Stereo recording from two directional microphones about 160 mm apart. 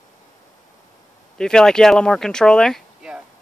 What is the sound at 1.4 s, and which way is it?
A man's voice, 5° left (ahead or behind).